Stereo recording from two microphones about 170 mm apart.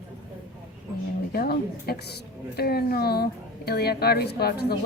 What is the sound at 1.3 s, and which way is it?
A woman's voice, 65° left (ahead or behind).